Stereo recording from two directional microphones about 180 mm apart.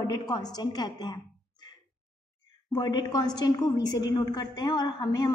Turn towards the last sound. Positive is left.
turn(degrees=20)  # may be behind; listen again after turning